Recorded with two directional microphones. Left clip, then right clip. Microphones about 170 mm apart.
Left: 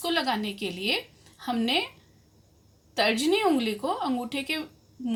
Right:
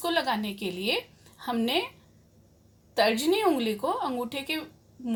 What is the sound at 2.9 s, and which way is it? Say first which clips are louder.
Speech: even; 40° right (ahead or behind).